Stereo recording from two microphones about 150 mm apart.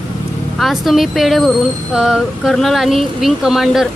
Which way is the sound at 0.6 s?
Centre (ahead or behind).